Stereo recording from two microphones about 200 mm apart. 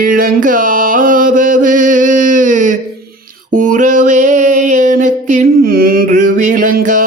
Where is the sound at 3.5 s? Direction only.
40° right (ahead or behind).